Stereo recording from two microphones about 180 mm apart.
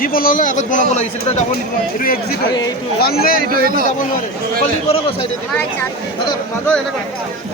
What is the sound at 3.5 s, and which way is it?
Speech, 55° right (ahead or behind).